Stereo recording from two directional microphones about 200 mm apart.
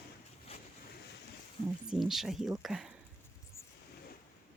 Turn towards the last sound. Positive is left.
turn(degrees=15)  # may be behind; listen again after turning